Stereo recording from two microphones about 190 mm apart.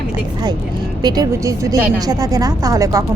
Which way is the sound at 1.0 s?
20° right (ahead or behind).